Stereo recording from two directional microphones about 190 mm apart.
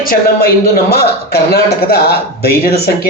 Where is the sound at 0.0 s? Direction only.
50° left (ahead or behind).